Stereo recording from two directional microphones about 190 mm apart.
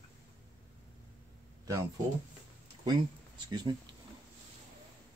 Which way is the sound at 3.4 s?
25° right (ahead or behind).